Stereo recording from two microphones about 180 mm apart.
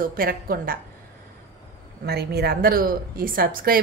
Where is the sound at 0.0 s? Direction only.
50° right (ahead or behind).